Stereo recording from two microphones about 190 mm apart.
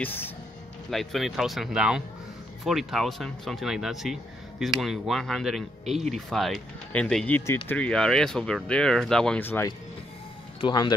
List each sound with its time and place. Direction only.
0.0 s speech: 10° left (ahead or behind)